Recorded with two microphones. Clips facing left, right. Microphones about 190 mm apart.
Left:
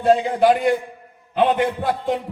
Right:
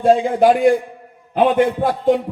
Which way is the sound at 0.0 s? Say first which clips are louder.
Right 3 dB; 45° right (ahead or behind).